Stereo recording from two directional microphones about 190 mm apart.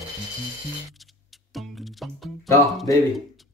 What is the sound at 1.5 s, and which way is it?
Music, centre (ahead or behind).